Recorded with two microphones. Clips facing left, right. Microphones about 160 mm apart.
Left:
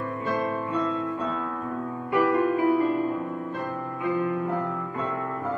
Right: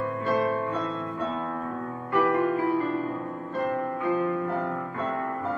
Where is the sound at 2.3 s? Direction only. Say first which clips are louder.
Left 2 dB; 15° left (ahead or behind).